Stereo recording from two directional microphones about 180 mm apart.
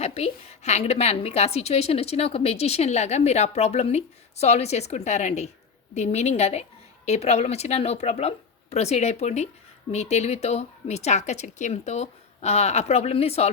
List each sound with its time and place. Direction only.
0.0 s a woman's voice: 35° left (ahead or behind)